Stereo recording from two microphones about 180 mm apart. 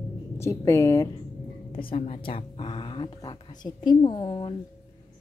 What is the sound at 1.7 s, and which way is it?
Speech, 30° left (ahead or behind).